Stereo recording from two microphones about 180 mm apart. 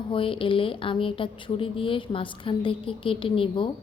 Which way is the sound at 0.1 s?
30° left (ahead or behind).